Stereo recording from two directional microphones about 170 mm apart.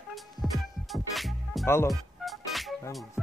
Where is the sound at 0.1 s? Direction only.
Centre (ahead or behind).